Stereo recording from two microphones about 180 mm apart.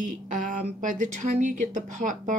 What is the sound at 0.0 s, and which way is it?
Speech, 45° right (ahead or behind).